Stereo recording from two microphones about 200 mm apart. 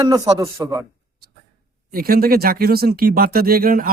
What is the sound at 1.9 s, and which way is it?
Speech, 45° right (ahead or behind).